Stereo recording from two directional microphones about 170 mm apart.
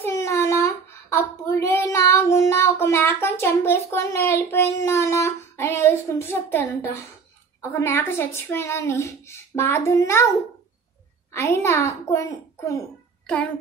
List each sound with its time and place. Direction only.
0.0 s child singing: 15° left (ahead or behind)
7.7 s speech: 15° left (ahead or behind)
11.3 s speech: 15° left (ahead or behind)